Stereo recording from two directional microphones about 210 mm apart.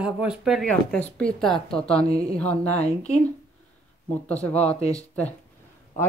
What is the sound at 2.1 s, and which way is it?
Speech, 30° left (ahead or behind).